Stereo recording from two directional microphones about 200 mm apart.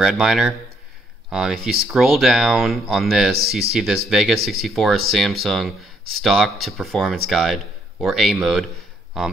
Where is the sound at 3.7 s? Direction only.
Centre (ahead or behind).